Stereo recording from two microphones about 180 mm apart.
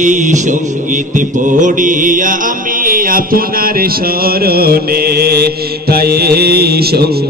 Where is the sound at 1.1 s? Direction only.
45° right (ahead or behind).